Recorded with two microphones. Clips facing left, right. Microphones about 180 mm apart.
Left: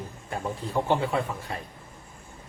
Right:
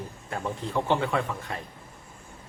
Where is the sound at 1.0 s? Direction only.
35° left (ahead or behind).